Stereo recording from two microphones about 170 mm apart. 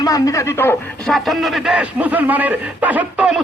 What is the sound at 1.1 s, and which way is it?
A man's voice, centre (ahead or behind).